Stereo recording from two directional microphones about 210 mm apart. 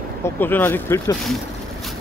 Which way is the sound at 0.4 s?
10° left (ahead or behind).